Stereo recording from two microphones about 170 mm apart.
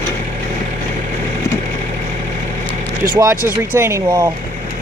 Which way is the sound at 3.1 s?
15° right (ahead or behind).